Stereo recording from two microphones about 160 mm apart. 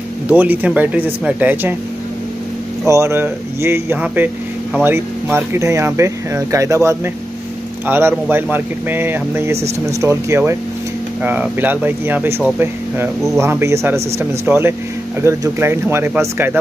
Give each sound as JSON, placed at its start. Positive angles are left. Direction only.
{"t": 0.3, "sound": "speech", "side_deg": -10}
{"t": 2.9, "sound": "speech", "side_deg": -15}